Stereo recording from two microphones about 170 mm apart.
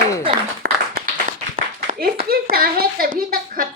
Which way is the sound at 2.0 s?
60° right (ahead or behind).